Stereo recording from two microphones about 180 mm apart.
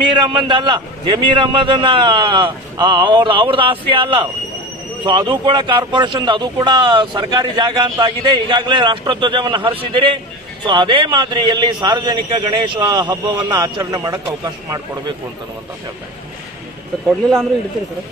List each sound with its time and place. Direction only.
0.1 s speech: 25° right (ahead or behind)